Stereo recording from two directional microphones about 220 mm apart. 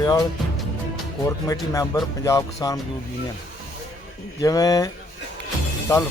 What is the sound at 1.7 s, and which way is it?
Speech, 15° left (ahead or behind).